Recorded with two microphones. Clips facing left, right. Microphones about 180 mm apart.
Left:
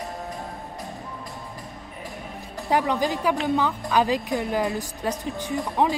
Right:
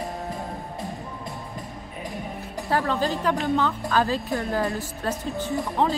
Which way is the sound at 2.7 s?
15° left (ahead or behind).